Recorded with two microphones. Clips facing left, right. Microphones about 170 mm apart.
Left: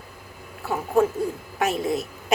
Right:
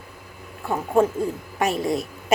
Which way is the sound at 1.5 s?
Centre (ahead or behind).